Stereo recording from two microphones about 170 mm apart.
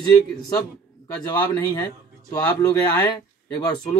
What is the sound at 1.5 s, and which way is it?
A man's voice, 20° left (ahead or behind).